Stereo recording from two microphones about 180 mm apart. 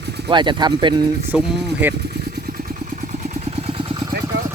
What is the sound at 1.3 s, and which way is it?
Speech, 10° right (ahead or behind).